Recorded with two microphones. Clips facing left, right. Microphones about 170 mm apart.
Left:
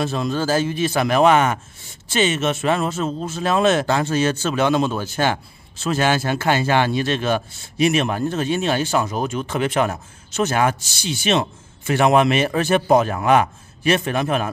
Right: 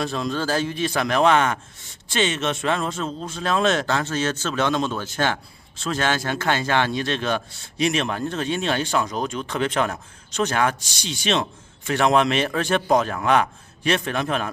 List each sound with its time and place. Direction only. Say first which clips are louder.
0.0 s a man's voice: left 3 dB; 5° left (ahead or behind)